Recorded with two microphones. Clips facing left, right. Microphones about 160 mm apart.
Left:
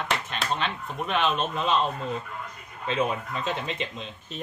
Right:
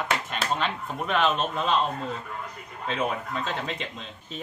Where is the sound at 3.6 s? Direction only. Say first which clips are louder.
Left 1 dB; centre (ahead or behind).